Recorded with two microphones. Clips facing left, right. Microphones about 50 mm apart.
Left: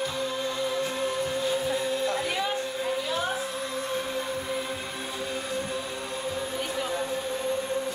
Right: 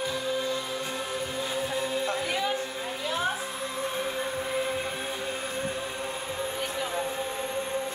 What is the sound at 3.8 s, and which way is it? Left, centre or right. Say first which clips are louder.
Music: right 1 dB; centre.